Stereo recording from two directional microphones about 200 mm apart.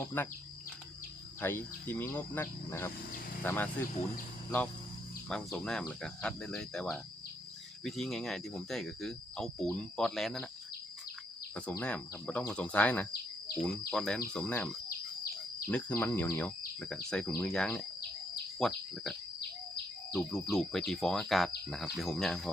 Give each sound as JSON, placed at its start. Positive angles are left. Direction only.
{"t": 0.0, "sound": "speech", "side_deg": 10}
{"t": 1.4, "sound": "speech", "side_deg": 10}
{"t": 5.3, "sound": "speech", "side_deg": 5}
{"t": 11.8, "sound": "speech", "side_deg": 5}
{"t": 19.4, "sound": "insect", "side_deg": 50}
{"t": 20.1, "sound": "speech", "side_deg": 0}